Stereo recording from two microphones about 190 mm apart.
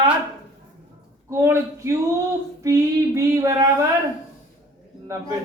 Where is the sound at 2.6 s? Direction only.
15° right (ahead or behind).